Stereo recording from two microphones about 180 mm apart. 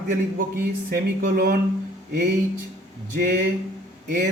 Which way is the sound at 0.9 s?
60° right (ahead or behind).